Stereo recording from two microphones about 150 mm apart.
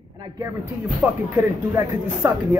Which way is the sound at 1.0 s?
5° right (ahead or behind).